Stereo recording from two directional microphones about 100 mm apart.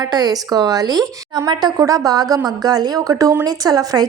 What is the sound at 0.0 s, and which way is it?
Speech, 40° right (ahead or behind).